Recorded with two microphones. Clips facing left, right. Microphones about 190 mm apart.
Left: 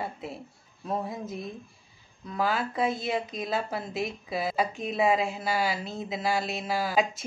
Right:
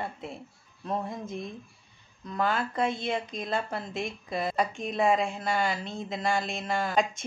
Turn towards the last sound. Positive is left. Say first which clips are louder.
# left 1 dB
turn(degrees=5)  # may be behind; listen again after turning